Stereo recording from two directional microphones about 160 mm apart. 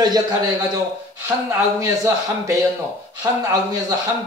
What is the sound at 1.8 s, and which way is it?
A man's voice, 20° right (ahead or behind).